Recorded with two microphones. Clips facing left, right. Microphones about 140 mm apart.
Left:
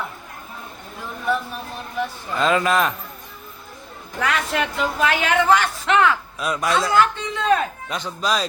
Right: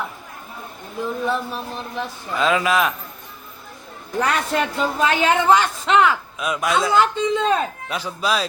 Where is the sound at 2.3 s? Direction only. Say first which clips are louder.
Even; centre (ahead or behind).